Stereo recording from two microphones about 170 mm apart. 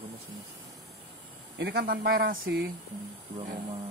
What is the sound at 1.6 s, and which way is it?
Speech, 65° right (ahead or behind).